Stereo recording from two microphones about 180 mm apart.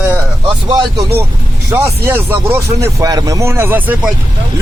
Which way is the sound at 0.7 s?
25° right (ahead or behind).